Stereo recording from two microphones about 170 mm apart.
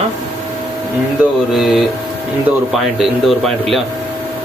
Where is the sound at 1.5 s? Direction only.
Centre (ahead or behind).